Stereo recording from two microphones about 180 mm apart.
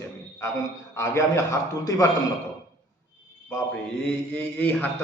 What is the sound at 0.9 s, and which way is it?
A man's voice, 15° left (ahead or behind).